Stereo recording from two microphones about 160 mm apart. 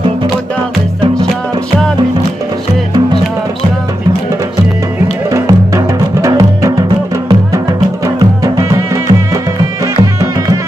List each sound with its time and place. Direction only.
5.3 s music: 20° right (ahead or behind)